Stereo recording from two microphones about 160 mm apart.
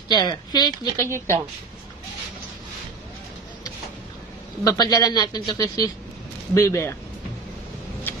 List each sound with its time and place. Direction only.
0.1 s speech: 25° left (ahead or behind)
4.6 s speech: 25° left (ahead or behind)